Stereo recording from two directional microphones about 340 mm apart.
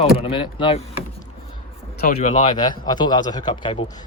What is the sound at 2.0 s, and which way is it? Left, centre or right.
A man's voice, centre.